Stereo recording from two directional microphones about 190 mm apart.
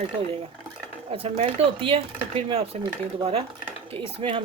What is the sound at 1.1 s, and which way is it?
A woman's voice, 30° right (ahead or behind).